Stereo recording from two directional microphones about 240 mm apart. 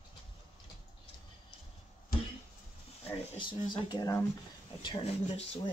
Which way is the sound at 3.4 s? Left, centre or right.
Centre.